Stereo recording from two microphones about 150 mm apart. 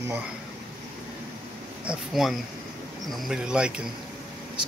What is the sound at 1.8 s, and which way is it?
Speech, centre (ahead or behind).